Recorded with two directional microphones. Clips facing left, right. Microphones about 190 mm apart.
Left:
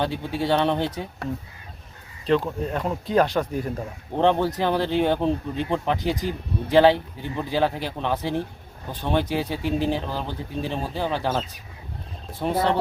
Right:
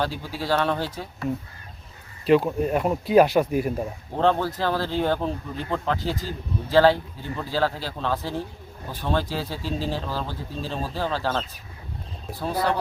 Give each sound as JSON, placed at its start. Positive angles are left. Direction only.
{"t": 0.0, "sound": "speech", "side_deg": 20}
{"t": 2.2, "sound": "speech", "side_deg": -10}
{"t": 4.2, "sound": "speech", "side_deg": 20}